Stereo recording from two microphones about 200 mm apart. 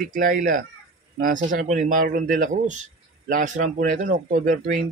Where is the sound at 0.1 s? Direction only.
40° right (ahead or behind).